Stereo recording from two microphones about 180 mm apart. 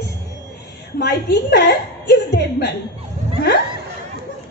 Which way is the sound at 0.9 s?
65° left (ahead or behind).